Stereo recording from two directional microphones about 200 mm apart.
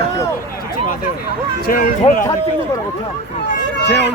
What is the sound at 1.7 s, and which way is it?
Speech, 45° left (ahead or behind).